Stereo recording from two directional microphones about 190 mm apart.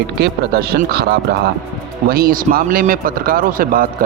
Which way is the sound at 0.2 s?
55° right (ahead or behind).